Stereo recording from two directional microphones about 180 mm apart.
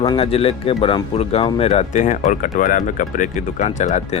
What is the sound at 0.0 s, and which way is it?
Speech, 30° left (ahead or behind).